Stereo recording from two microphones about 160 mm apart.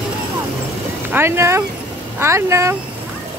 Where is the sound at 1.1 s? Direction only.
15° right (ahead or behind).